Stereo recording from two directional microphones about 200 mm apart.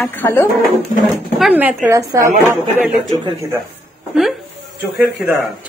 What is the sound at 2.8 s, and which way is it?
Speech, centre (ahead or behind).